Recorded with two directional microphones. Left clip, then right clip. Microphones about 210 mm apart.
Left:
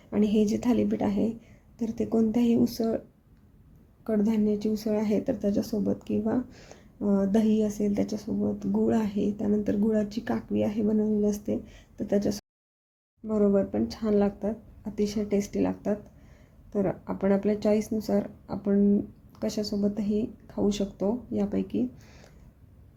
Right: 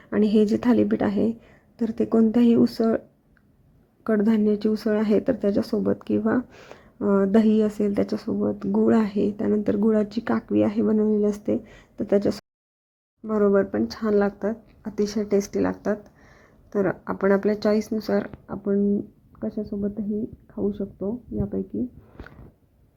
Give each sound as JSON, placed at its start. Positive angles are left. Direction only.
{"t": 0.1, "sound": "speech", "side_deg": -20}
{"t": 4.0, "sound": "speech", "side_deg": -20}
{"t": 13.2, "sound": "speech", "side_deg": 0}